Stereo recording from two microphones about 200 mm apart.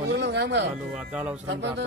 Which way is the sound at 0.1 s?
60° right (ahead or behind).